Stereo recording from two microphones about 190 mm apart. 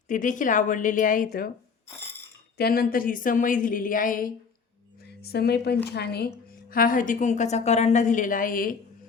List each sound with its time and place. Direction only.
0.1 s a woman's voice: 45° left (ahead or behind)
2.6 s a woman's voice: 55° left (ahead or behind)
5.0 s a woman's voice: 55° left (ahead or behind)